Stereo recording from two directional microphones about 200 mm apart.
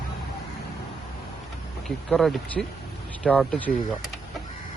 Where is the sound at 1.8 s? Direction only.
Centre (ahead or behind).